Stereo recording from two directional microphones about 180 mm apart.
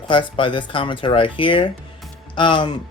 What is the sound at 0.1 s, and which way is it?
Speech, 25° left (ahead or behind).